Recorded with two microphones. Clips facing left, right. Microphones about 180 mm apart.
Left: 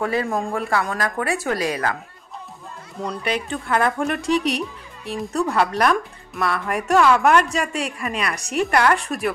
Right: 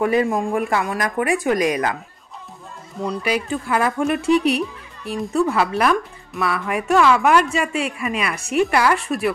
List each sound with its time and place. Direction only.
0.0 s speech: 20° right (ahead or behind)
3.0 s speech: 5° right (ahead or behind)